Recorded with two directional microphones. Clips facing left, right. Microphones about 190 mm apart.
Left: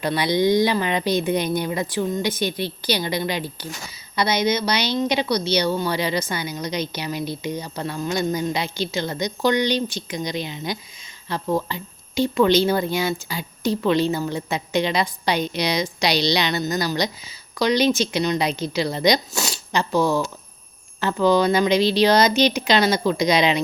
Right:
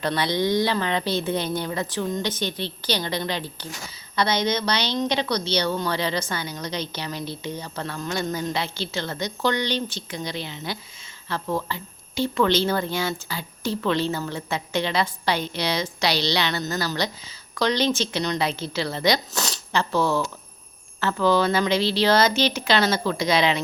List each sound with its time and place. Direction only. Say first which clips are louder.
0.0 s speech: left 4 dB; 10° left (ahead or behind)